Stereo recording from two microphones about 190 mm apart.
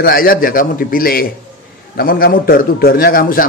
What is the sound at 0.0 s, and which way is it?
A man's voice, 50° left (ahead or behind).